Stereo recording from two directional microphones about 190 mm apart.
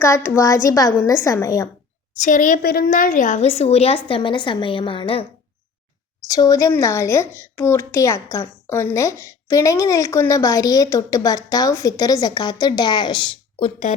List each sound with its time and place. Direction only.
0.0 s a woman's voice: 15° left (ahead or behind)
2.2 s a woman's voice: 40° left (ahead or behind)
6.2 s a woman's voice: 20° left (ahead or behind); by 13.9 s 35° left (ahead or behind)